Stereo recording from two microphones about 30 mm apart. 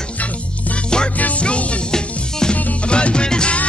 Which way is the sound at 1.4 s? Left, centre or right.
Left.